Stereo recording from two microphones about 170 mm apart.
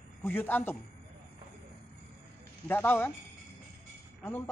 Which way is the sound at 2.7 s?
10° left (ahead or behind).